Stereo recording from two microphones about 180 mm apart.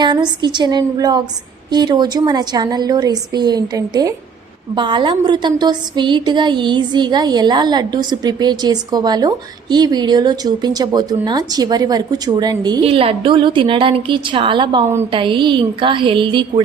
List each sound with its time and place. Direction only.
0.0 s a woman's voice: 25° right (ahead or behind)